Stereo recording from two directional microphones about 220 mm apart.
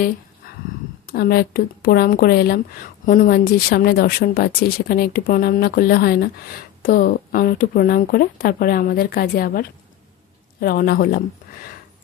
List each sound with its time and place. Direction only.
1.1 s a woman's voice: 45° left (ahead or behind)